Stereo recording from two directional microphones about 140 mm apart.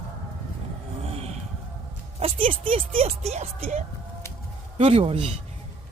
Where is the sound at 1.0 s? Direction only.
45° right (ahead or behind).